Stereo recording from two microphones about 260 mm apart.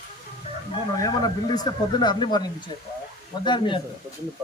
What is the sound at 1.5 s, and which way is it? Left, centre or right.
Speech, centre.